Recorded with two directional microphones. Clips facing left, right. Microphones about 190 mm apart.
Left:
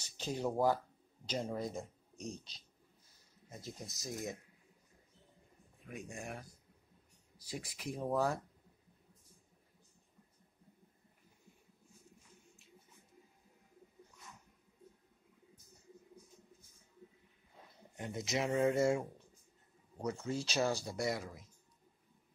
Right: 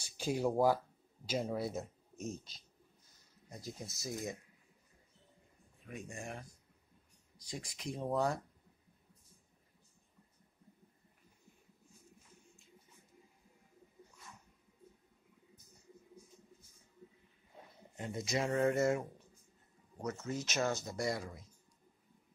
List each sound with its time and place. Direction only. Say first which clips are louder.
0.0 s speech: right 3 dB; 10° right (ahead or behind)
5.9 s speech: even; centre (ahead or behind)
18.0 s speech: even; centre (ahead or behind)
20.2 s speech: left 1 dB; 30° left (ahead or behind)
20.6 s speech: left 1 dB; 10° left (ahead or behind)